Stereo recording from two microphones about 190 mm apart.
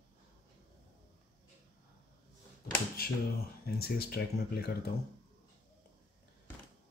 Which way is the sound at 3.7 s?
55° left (ahead or behind).